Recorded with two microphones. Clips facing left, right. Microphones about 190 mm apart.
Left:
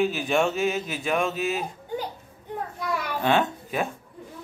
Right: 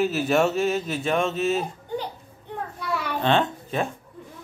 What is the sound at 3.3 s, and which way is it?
Speech, 10° left (ahead or behind).